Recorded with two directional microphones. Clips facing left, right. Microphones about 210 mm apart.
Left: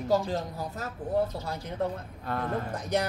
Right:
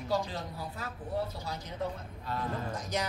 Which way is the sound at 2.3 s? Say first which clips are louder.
Left 4 dB; 60° left (ahead or behind).